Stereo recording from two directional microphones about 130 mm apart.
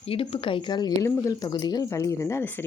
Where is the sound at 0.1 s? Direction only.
45° left (ahead or behind).